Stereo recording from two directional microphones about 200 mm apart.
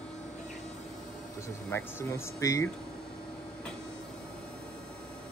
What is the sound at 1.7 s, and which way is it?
Speech, 15° left (ahead or behind).